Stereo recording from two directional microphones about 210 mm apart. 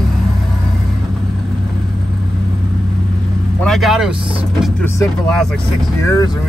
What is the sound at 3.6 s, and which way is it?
Vehicle, centre (ahead or behind).